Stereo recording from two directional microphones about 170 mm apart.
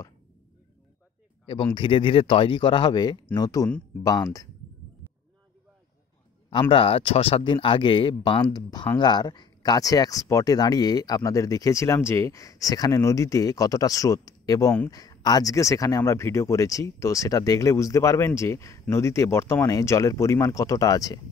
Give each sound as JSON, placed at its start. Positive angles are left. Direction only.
{"t": 1.4, "sound": "speech", "side_deg": 30}
{"t": 6.7, "sound": "speech", "side_deg": 35}